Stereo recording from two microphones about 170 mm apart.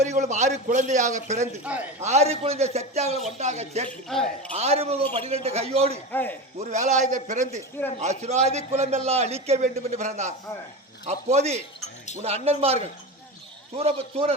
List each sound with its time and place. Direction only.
0.0 s a man's voice: 45° right (ahead or behind)
4.1 s speech: centre (ahead or behind)
4.5 s a man's voice: 40° right (ahead or behind)
6.1 s speech: 10° left (ahead or behind)
6.6 s a man's voice: 40° right (ahead or behind)